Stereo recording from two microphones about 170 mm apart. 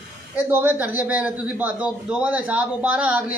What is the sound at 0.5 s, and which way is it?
A man's voice, 10° right (ahead or behind).